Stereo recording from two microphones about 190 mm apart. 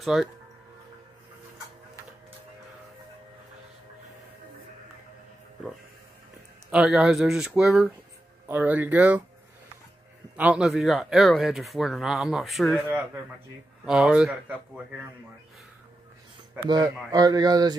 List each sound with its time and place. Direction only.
0.0 s speech: centre (ahead or behind)
6.7 s speech: 5° right (ahead or behind)
10.3 s speech: 5° right (ahead or behind)
16.6 s a man's voice: 20° right (ahead or behind)